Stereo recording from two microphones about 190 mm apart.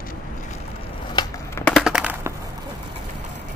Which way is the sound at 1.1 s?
20° left (ahead or behind).